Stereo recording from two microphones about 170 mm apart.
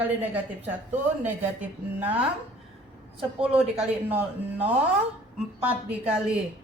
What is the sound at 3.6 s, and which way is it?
Speech, 10° right (ahead or behind).